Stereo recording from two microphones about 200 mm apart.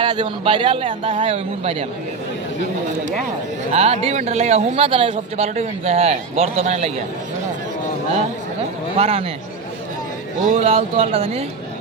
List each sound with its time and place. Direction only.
0.0 s a man's voice: 25° right (ahead or behind)
3.7 s speech: 30° right (ahead or behind)
9.0 s speech: 30° right (ahead or behind)
10.4 s speech: 35° right (ahead or behind)